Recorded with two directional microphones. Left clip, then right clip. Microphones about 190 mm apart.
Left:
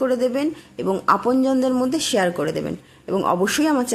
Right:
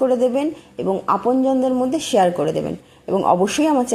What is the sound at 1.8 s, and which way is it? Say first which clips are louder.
A woman's voice: right 4 dB; centre (ahead or behind).